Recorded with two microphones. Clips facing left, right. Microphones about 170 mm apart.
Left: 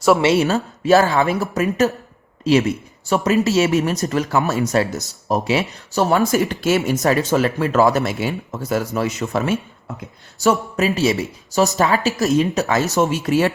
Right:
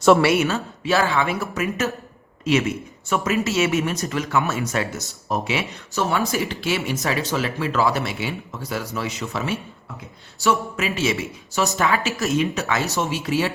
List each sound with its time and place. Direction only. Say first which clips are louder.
0.2 s a woman's voice: left 2 dB; 25° left (ahead or behind)
0.4 s speech: left 5 dB; 40° left (ahead or behind)